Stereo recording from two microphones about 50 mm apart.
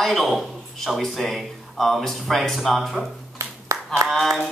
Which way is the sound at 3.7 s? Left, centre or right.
Right.